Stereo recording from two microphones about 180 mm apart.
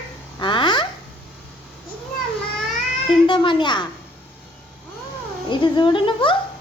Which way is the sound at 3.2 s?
25° left (ahead or behind).